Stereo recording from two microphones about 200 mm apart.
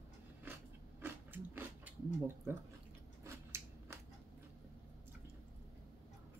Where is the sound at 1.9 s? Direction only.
10° right (ahead or behind).